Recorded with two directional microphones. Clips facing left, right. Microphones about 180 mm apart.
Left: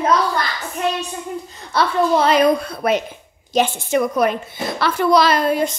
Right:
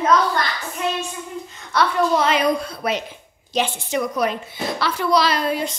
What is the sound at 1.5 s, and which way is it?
Speech, 30° left (ahead or behind).